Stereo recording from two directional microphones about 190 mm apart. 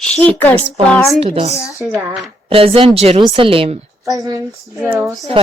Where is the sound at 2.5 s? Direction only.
30° right (ahead or behind).